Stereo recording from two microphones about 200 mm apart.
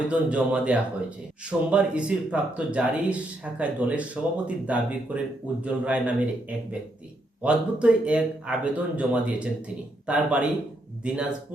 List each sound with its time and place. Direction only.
0.1 s speech: 5° right (ahead or behind)
7.4 s speech: 5° right (ahead or behind)